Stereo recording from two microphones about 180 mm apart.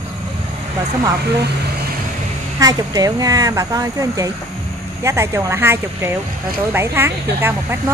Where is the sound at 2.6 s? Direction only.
20° right (ahead or behind).